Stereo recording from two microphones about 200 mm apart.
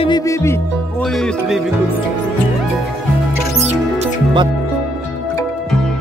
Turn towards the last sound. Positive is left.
turn(degrees=-25)  # may be behind; listen again after turning